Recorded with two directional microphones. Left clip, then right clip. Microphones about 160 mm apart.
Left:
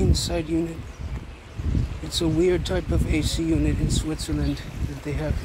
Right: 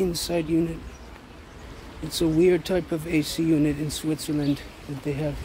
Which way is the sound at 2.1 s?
45° right (ahead or behind).